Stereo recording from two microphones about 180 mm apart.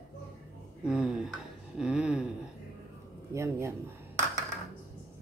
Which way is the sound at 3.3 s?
15° right (ahead or behind).